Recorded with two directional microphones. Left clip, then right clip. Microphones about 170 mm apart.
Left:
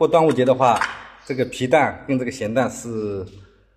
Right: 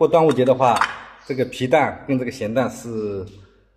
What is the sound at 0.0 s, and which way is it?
Speech, 20° right (ahead or behind).